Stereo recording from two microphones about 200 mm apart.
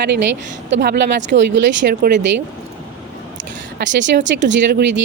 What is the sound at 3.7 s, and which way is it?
Speech, 65° right (ahead or behind).